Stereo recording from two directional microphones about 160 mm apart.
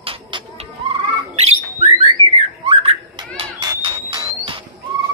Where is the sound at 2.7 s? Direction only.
35° right (ahead or behind).